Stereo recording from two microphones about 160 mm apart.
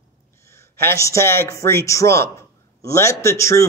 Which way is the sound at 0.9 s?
20° left (ahead or behind).